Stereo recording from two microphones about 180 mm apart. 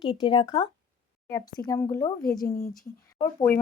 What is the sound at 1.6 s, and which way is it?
Speech, 15° left (ahead or behind).